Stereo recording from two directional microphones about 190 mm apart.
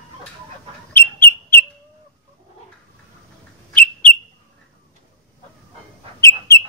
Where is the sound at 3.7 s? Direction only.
5° left (ahead or behind).